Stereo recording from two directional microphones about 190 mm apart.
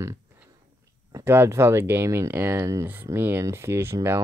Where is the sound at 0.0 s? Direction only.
15° right (ahead or behind).